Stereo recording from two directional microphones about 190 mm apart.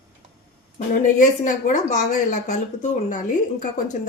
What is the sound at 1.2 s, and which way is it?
Speech, 40° left (ahead or behind).